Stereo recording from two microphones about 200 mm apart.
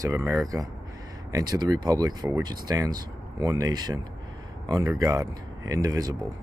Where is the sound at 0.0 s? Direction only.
15° right (ahead or behind).